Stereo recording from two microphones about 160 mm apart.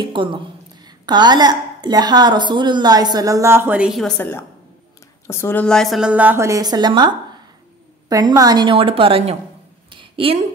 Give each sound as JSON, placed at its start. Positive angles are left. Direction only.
{"t": 0.0, "sound": "a woman's voice", "side_deg": -30}
{"t": 4.2, "sound": "a woman's voice", "side_deg": 10}
{"t": 9.8, "sound": "a sound", "side_deg": -35}